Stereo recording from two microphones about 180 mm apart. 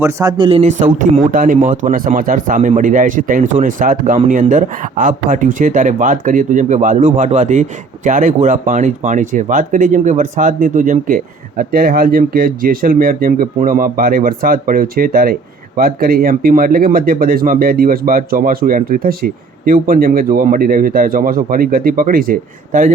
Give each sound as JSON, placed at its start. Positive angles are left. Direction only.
{"t": 0.0, "sound": "speech", "side_deg": -20}
{"t": 0.6, "sound": "speech", "side_deg": -45}